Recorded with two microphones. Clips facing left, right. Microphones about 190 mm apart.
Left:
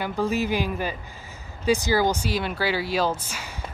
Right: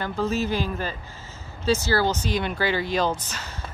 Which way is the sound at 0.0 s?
10° left (ahead or behind).